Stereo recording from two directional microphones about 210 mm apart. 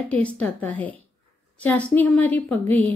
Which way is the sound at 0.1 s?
5° left (ahead or behind).